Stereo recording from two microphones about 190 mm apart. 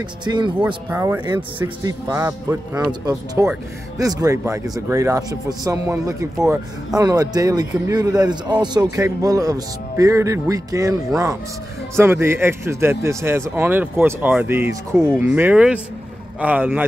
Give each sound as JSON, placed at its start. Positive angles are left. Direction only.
{"t": 0.2, "sound": "speech", "side_deg": -25}
{"t": 0.6, "sound": "a man's voice", "side_deg": -10}